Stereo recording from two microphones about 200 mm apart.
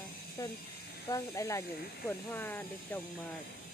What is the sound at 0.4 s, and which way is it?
Speech, 15° left (ahead or behind).